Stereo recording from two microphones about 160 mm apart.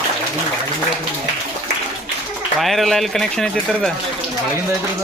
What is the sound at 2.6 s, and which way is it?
Speech, centre (ahead or behind).